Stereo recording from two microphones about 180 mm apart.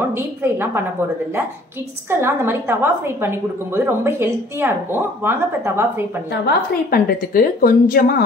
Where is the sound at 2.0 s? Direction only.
15° right (ahead or behind).